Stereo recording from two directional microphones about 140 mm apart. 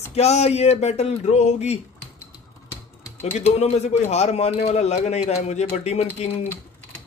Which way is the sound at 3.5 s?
50° left (ahead or behind).